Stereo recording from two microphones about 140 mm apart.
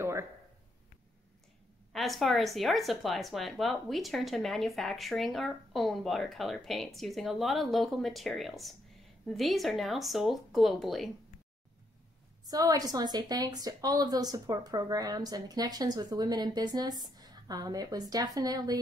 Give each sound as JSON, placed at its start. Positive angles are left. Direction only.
{"t": 0.0, "sound": "a sound", "side_deg": -20}
{"t": 1.9, "sound": "a woman's voice", "side_deg": 0}
{"t": 12.4, "sound": "a woman's voice", "side_deg": -25}